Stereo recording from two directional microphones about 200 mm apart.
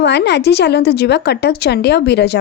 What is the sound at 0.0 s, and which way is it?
A woman's voice, 60° left (ahead or behind).